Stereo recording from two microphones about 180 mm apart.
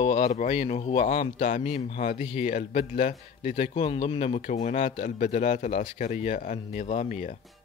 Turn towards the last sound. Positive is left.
turn(degrees=45)  # may be behind; listen again after turning